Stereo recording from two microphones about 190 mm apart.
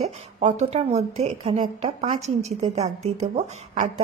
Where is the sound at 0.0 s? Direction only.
35° right (ahead or behind).